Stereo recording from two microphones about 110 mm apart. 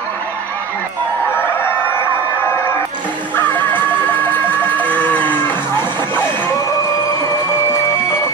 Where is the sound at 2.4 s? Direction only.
20° left (ahead or behind).